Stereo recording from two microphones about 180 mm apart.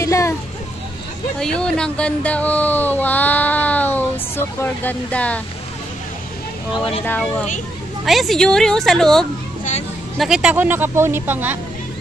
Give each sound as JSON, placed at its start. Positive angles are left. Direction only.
{"t": 0.0, "sound": "a sound", "side_deg": 15}
{"t": 1.4, "sound": "speech", "side_deg": 5}
{"t": 6.7, "sound": "speech", "side_deg": 30}
{"t": 7.1, "sound": "speech", "side_deg": 5}